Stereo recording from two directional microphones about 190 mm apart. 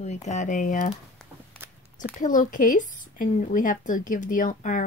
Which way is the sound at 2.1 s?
45° left (ahead or behind).